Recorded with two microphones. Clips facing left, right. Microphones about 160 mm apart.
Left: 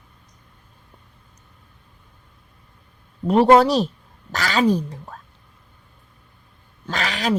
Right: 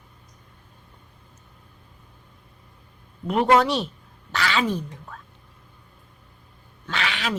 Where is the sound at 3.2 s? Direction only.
35° left (ahead or behind).